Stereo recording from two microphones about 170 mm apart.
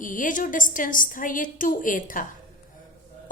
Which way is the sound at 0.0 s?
50° left (ahead or behind).